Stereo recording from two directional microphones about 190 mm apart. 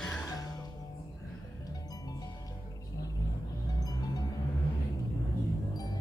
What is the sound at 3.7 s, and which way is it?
Music, 20° left (ahead or behind).